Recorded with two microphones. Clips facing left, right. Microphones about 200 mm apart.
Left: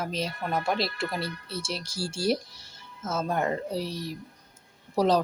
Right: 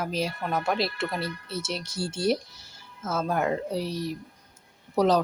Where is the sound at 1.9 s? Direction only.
30° left (ahead or behind).